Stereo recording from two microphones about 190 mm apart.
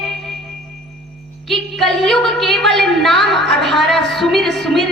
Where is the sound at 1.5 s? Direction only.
Centre (ahead or behind).